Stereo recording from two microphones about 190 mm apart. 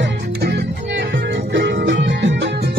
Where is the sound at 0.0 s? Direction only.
65° right (ahead or behind).